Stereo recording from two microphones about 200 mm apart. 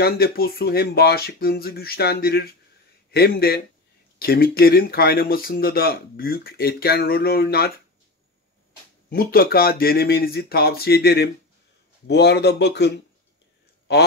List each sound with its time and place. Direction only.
0.0 s speech: 50° left (ahead or behind)
9.1 s speech: 50° left (ahead or behind)